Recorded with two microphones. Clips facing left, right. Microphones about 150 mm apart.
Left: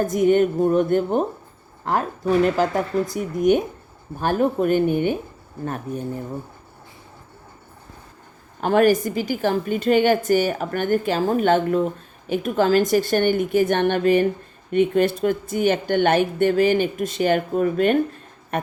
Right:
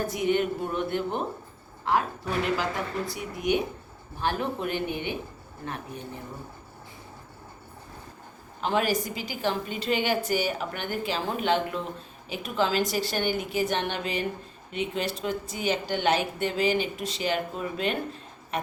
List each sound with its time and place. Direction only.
0.0 s speech: 45° left (ahead or behind)
8.6 s speech: 50° left (ahead or behind)